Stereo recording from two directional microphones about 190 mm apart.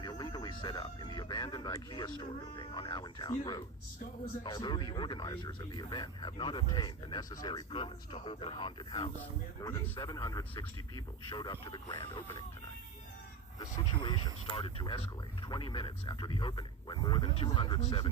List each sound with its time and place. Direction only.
0.0 s a sound: 20° left (ahead or behind)
2.6 s speech: 25° left (ahead or behind)
4.4 s speech: 25° left (ahead or behind)
13.6 s speech: 20° left (ahead or behind)